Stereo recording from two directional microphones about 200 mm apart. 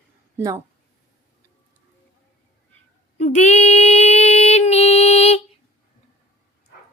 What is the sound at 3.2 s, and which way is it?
Music, 35° left (ahead or behind).